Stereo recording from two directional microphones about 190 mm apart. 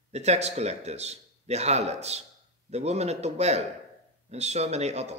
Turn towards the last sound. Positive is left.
turn(degrees=-35)  # may be behind; listen again after turning